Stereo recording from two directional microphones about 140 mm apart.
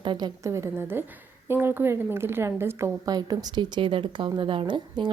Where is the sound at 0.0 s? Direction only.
35° right (ahead or behind).